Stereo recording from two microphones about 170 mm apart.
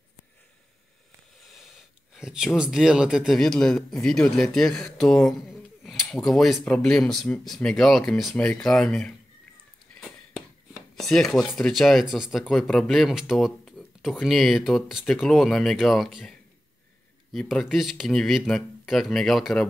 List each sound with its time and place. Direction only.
1.5 s speech: centre (ahead or behind)
9.9 s a sound: 5° left (ahead or behind)
11.0 s speech: centre (ahead or behind)